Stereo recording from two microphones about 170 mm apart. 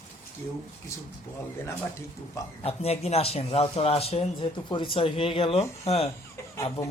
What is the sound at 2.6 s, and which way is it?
Speech, 35° left (ahead or behind).